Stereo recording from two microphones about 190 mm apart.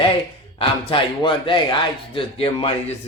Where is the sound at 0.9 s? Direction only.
25° left (ahead or behind).